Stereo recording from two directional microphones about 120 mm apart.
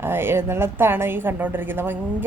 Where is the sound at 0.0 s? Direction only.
20° right (ahead or behind).